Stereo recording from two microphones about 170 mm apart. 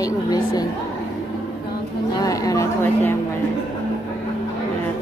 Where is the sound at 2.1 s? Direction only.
20° left (ahead or behind).